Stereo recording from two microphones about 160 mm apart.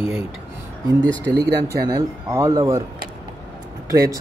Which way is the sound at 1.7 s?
20° right (ahead or behind).